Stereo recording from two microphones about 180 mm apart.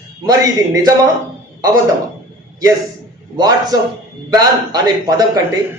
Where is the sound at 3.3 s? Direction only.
20° right (ahead or behind).